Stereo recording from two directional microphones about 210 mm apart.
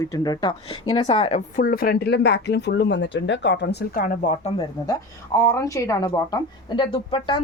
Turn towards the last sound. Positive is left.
turn(degrees=25)  # may be behind; listen again after turning